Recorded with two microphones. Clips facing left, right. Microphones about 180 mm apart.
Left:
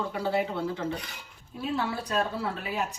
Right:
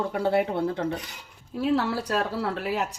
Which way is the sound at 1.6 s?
70° right (ahead or behind).